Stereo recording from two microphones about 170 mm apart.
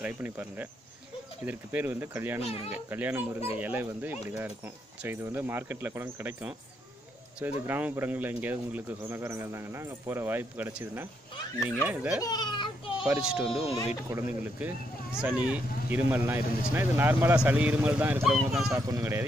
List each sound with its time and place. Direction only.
0.0 s speech: 10° right (ahead or behind)
2.4 s speech: 35° left (ahead or behind)
2.9 s speech: 10° right (ahead or behind)
12.2 s a sound: 25° left (ahead or behind)
13.2 s speech: 5° right (ahead or behind)
14.0 s speech: 15° right (ahead or behind)
18.8 s speech: 20° right (ahead or behind)